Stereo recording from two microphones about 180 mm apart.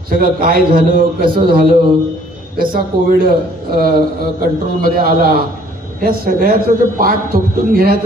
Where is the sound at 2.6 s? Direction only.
50° right (ahead or behind).